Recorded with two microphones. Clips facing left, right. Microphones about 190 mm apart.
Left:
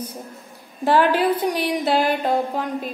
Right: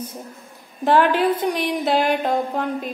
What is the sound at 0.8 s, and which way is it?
A woman's voice, 5° left (ahead or behind).